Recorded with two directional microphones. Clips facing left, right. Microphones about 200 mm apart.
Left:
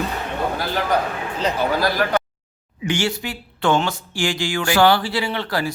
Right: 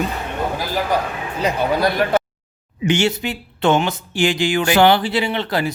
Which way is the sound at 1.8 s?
25° right (ahead or behind).